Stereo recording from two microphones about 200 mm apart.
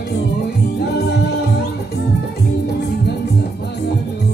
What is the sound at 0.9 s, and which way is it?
Music, 55° left (ahead or behind).